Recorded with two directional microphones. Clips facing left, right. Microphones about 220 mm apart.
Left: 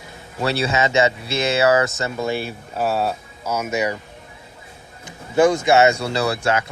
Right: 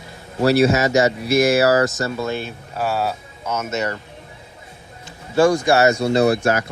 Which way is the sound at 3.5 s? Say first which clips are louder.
Left 1 dB; 10° left (ahead or behind).